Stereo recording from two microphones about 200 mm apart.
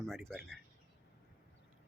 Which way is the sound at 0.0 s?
Centre (ahead or behind).